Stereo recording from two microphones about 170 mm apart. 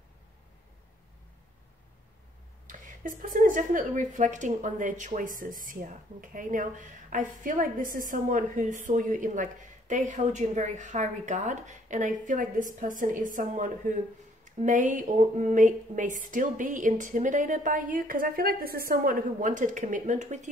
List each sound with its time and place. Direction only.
2.6 s speech: 50° right (ahead or behind)